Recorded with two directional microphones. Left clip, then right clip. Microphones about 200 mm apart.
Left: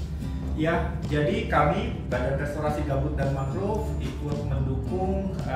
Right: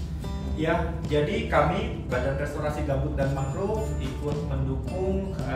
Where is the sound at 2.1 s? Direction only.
Centre (ahead or behind).